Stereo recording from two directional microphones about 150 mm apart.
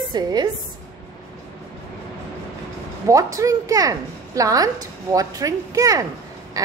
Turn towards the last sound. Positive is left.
turn(degrees=-20)  # may be behind; listen again after turning